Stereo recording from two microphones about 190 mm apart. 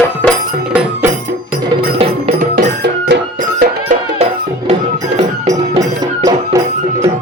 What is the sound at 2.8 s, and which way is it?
Music, 65° right (ahead or behind).